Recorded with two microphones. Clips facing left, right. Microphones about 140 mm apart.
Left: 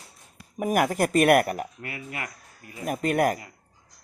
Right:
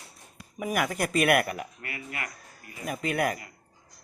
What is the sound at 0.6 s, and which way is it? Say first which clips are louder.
Speech: left 5 dB; 45° left (ahead or behind).